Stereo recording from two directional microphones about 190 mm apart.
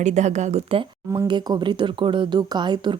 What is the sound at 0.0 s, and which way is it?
Speech, 40° right (ahead or behind).